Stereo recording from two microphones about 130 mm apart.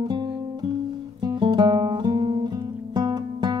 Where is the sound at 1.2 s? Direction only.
35° right (ahead or behind).